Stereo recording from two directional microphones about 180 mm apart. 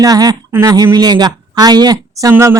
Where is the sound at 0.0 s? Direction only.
20° right (ahead or behind).